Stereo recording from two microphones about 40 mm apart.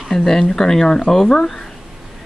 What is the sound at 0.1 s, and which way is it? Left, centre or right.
Speech, centre.